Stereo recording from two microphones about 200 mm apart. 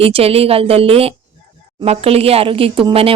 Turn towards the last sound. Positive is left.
turn(degrees=-30)  # may be behind; listen again after turning